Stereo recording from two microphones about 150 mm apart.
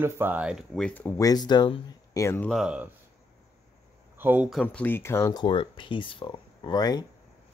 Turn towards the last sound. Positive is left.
turn(degrees=25)  # may be behind; listen again after turning